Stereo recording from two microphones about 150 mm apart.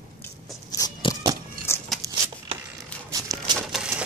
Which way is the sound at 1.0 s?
35° left (ahead or behind).